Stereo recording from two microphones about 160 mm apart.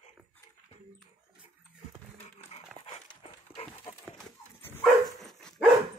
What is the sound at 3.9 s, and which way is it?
Horse, 40° left (ahead or behind).